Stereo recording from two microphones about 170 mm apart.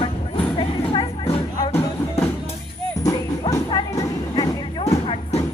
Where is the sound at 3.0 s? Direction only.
20° left (ahead or behind).